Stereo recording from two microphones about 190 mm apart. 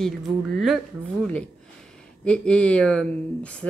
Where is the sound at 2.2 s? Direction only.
5° left (ahead or behind).